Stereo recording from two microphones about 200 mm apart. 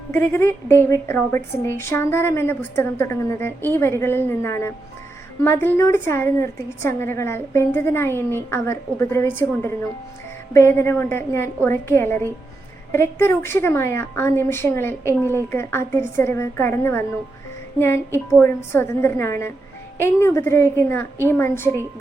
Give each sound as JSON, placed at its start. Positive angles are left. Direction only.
{"t": 0.1, "sound": "a woman's voice", "side_deg": 10}